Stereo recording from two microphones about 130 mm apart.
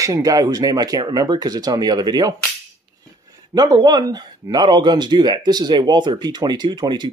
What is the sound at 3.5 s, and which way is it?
Speech, 30° right (ahead or behind).